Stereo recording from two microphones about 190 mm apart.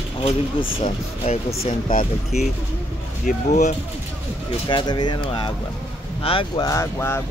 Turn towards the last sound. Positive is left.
turn(degrees=15)  # may be behind; listen again after turning